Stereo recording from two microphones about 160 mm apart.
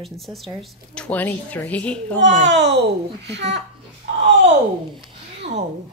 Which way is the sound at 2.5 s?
90° right.